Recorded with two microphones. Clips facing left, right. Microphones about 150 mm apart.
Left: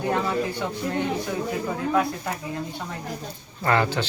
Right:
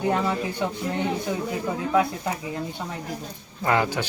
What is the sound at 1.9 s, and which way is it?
Speech, 15° right (ahead or behind).